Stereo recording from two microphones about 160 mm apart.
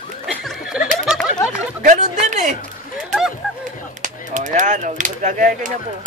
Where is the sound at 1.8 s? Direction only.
50° right (ahead or behind).